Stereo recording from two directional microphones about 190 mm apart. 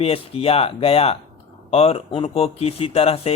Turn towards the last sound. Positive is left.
turn(degrees=35)  # may be behind; listen again after turning